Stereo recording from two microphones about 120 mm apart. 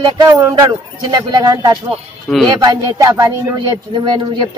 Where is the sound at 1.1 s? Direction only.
35° right (ahead or behind).